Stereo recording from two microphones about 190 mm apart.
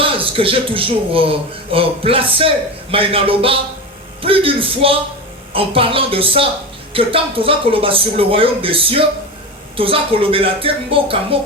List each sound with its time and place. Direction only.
0.0 s speech: 30° right (ahead or behind)